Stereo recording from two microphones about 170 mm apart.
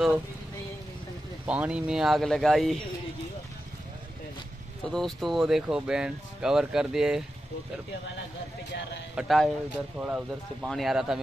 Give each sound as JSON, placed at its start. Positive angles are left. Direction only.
{"t": 1.4, "sound": "speech", "side_deg": -10}
{"t": 4.8, "sound": "speech", "side_deg": 0}
{"t": 9.1, "sound": "speech", "side_deg": 0}